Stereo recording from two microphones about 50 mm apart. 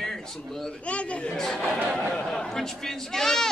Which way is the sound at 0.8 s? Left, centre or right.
Left.